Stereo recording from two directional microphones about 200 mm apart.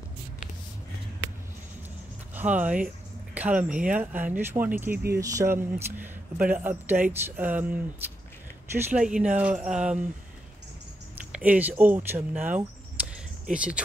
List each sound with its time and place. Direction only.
2.3 s speech: 5° right (ahead or behind)
4.9 s speech: 50° right (ahead or behind)
5.2 s speech: 15° right (ahead or behind)
8.9 s speech: 5° right (ahead or behind)
11.3 s speech: 10° right (ahead or behind)